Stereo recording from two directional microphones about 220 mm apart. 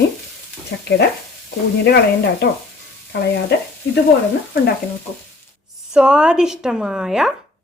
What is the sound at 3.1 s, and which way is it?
Speech, 55° left (ahead or behind).